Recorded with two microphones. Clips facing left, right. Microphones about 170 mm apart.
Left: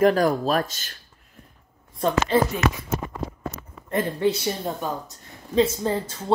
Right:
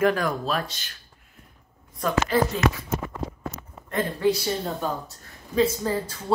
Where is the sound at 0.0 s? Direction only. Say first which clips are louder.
Left 4 dB; 35° left (ahead or behind).